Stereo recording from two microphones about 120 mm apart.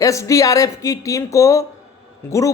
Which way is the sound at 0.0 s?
25° left (ahead or behind).